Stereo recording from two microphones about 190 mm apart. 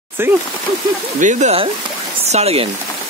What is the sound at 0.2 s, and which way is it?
Speech, 10° right (ahead or behind).